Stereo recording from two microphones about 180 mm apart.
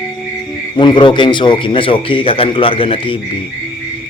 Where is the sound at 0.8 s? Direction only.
25° left (ahead or behind).